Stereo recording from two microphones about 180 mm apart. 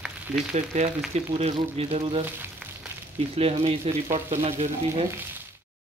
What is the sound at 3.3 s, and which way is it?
Speech, 35° right (ahead or behind).